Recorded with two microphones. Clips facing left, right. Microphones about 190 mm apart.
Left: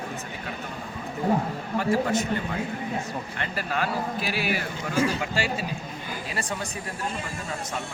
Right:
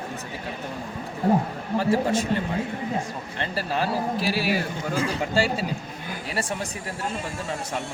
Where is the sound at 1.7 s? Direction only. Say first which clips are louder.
Right 2 dB; 30° right (ahead or behind).